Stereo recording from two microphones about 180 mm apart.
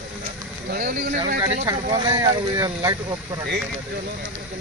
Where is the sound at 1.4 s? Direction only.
15° right (ahead or behind).